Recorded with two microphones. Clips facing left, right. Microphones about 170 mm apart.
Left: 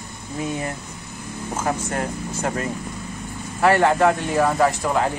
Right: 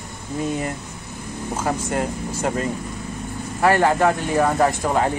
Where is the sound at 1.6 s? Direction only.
10° right (ahead or behind).